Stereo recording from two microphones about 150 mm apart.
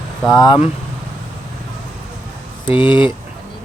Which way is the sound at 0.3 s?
25° left (ahead or behind).